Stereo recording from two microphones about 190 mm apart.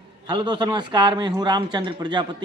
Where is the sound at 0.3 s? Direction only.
25° right (ahead or behind).